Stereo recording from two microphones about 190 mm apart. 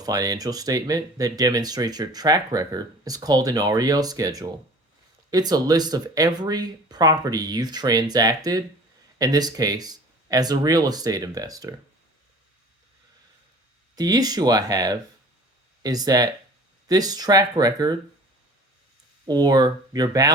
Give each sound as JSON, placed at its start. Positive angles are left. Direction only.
{"t": 0.0, "sound": "speech", "side_deg": -20}
{"t": 13.9, "sound": "speech", "side_deg": -20}
{"t": 19.3, "sound": "speech", "side_deg": -20}